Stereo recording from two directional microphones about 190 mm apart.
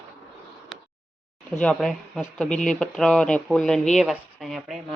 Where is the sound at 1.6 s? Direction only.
5° left (ahead or behind).